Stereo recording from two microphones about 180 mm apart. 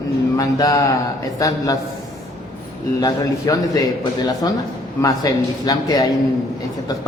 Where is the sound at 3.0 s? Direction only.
20° left (ahead or behind).